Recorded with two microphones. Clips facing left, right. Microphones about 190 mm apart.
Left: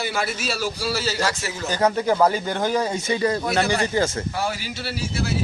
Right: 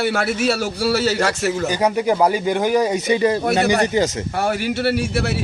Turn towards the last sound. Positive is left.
turn(degrees=-70)  # may be behind; listen again after turning